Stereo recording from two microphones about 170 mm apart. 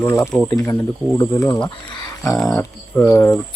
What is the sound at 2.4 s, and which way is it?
Speech, centre (ahead or behind).